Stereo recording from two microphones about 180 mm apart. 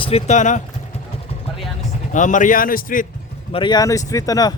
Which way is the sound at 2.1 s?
45° left (ahead or behind).